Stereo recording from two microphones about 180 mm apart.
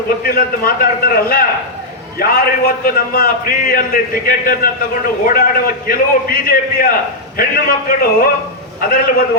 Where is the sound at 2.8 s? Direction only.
55° left (ahead or behind).